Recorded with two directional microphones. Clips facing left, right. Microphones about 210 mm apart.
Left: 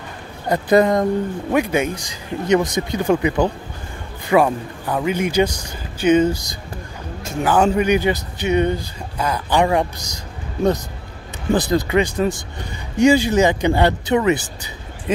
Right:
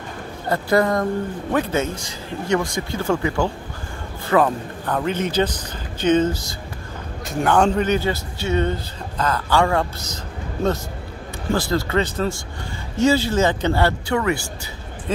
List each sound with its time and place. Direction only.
0.5 s speech: 20° left (ahead or behind)